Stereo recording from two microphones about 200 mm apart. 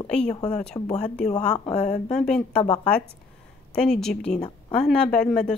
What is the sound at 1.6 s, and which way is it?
Speech, 30° left (ahead or behind).